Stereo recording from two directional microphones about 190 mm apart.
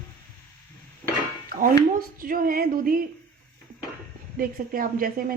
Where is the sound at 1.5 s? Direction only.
50° right (ahead or behind).